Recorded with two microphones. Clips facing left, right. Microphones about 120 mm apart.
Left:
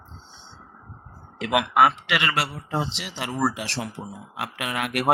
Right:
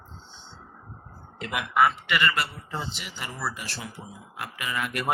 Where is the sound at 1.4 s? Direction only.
75° left (ahead or behind).